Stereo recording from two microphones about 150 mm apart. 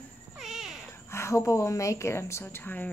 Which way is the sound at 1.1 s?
20° left (ahead or behind).